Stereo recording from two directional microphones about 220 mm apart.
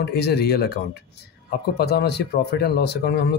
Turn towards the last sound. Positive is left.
turn(degrees=50)  # may be behind; listen again after turning